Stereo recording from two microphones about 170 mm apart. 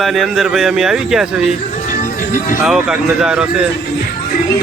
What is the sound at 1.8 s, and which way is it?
Music, 50° left (ahead or behind).